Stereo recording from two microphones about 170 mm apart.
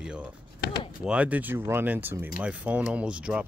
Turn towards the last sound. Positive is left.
turn(degrees=-5)  # may be behind; listen again after turning